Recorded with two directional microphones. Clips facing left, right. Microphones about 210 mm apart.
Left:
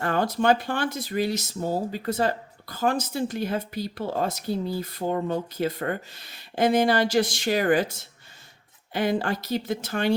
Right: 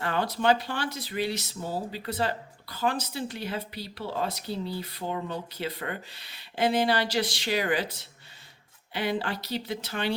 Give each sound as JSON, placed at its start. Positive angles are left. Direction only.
{"t": 0.0, "sound": "speech", "side_deg": 45}